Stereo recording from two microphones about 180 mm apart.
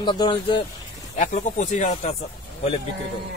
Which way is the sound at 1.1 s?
40° left (ahead or behind).